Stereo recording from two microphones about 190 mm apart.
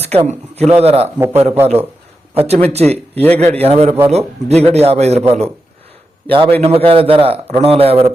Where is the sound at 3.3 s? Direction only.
35° right (ahead or behind).